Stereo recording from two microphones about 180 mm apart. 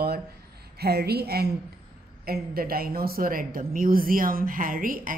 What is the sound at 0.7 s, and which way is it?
A woman's voice, 60° right (ahead or behind).